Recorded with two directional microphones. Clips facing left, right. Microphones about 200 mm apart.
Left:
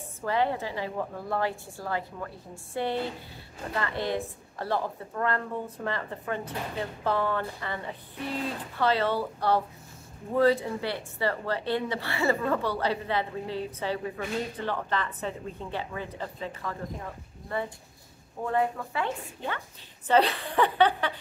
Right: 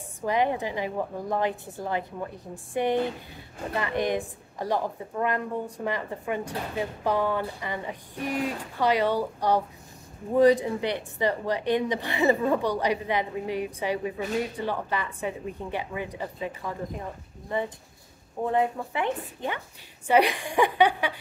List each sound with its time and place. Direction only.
0.2 s a woman's voice: 15° right (ahead or behind)